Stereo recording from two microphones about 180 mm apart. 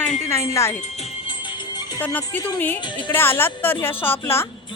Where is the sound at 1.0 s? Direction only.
30° left (ahead or behind).